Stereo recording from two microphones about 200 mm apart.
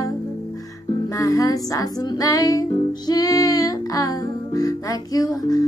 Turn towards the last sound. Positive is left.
turn(degrees=20)  # may be behind; listen again after turning